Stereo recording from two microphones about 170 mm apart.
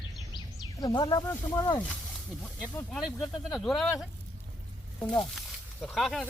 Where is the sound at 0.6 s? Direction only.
20° left (ahead or behind).